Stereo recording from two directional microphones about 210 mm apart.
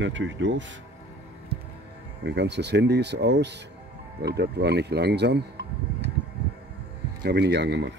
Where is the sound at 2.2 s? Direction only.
55° right (ahead or behind).